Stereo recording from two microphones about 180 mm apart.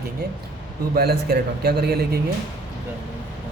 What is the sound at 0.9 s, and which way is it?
A man's voice, 60° right (ahead or behind).